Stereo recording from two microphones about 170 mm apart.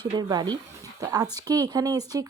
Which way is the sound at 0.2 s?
25° right (ahead or behind).